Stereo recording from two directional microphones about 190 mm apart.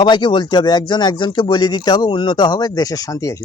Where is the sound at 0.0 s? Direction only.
25° left (ahead or behind).